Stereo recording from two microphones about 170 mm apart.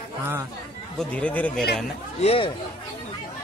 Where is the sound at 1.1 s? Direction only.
10° left (ahead or behind).